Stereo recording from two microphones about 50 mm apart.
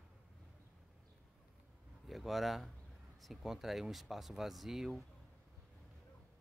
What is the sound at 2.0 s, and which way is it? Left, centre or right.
Speech, centre.